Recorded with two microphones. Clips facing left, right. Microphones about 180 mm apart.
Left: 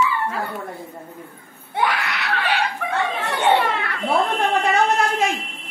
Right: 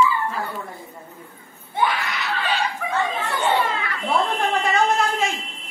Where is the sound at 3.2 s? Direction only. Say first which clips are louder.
Left 6 dB; 75° left (ahead or behind).